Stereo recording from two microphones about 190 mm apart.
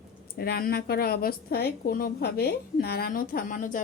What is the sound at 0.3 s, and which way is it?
A woman's voice, 55° left (ahead or behind).